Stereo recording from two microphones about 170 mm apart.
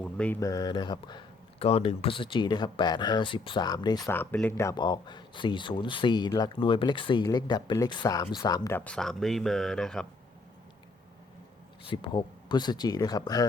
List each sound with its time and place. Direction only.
0.0 s a sound: 5° left (ahead or behind)
0.3 s speech: 20° left (ahead or behind)
8.8 s speech: 5° left (ahead or behind)
11.9 s speech: 30° left (ahead or behind)